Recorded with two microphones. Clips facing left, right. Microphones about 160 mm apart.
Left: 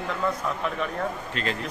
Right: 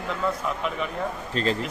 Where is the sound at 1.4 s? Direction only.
35° right (ahead or behind).